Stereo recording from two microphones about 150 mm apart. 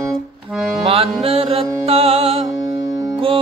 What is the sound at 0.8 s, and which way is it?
Music, 40° right (ahead or behind).